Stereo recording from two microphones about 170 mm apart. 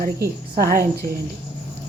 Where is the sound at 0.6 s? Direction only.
60° right (ahead or behind).